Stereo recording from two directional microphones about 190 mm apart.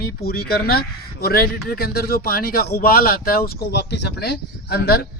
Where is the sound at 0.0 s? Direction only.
55° left (ahead or behind).